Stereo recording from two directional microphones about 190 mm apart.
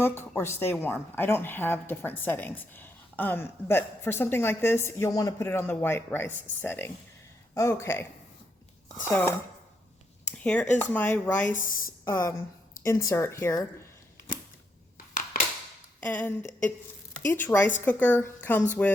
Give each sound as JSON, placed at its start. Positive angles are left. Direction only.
{"t": 0.0, "sound": "speech", "side_deg": 10}
{"t": 10.3, "sound": "speech", "side_deg": 5}
{"t": 11.4, "sound": "speech", "side_deg": 45}
{"t": 12.0, "sound": "speech", "side_deg": 15}
{"t": 14.9, "sound": "crushing", "side_deg": 45}
{"t": 16.0, "sound": "speech", "side_deg": 10}